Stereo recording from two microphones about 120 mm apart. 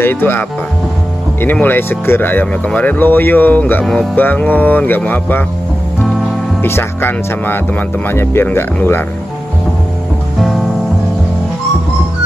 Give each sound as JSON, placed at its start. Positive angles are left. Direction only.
{"t": 0.0, "sound": "speech", "side_deg": 20}
{"t": 3.8, "sound": "music", "side_deg": 0}
{"t": 4.1, "sound": "speech", "side_deg": 15}
{"t": 6.6, "sound": "speech", "side_deg": 20}